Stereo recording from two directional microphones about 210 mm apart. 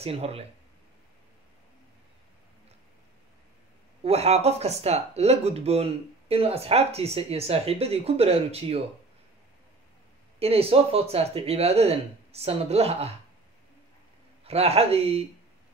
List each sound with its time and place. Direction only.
0.0 s speech: 30° right (ahead or behind)
4.0 s speech: 30° right (ahead or behind)
10.4 s speech: 30° right (ahead or behind)
14.4 s speech: 30° right (ahead or behind)